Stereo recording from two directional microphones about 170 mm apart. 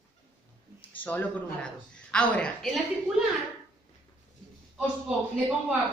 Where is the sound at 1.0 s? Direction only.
5° left (ahead or behind).